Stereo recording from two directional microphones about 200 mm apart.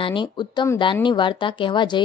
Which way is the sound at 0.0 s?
25° left (ahead or behind).